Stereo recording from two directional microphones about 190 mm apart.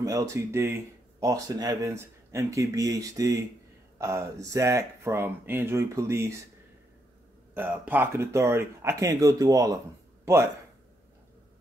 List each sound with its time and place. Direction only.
0.0 s speech: 15° right (ahead or behind)
7.5 s speech: 10° right (ahead or behind)